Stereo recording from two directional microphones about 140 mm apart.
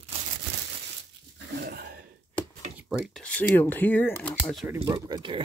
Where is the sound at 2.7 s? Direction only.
Centre (ahead or behind).